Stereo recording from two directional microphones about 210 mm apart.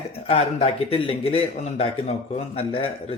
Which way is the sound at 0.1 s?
30° left (ahead or behind).